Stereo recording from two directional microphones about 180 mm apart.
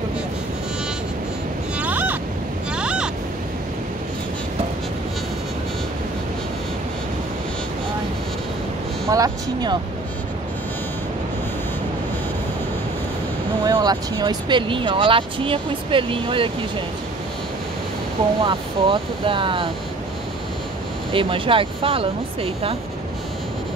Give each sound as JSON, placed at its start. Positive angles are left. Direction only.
{"t": 1.8, "sound": "ocean", "side_deg": -10}
{"t": 2.7, "sound": "waves", "side_deg": -5}
{"t": 9.1, "sound": "speech", "side_deg": -20}
{"t": 13.7, "sound": "speech", "side_deg": -20}
{"t": 18.4, "sound": "speech", "side_deg": -30}
{"t": 21.1, "sound": "speech", "side_deg": -30}